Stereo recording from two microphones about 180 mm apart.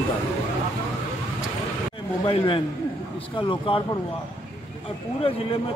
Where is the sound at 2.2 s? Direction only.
30° left (ahead or behind).